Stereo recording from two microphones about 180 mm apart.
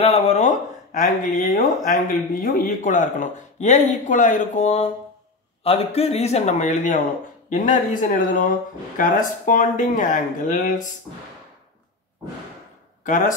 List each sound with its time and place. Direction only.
0.0 s a man's voice: 35° left (ahead or behind)
13.0 s speech: 45° left (ahead or behind)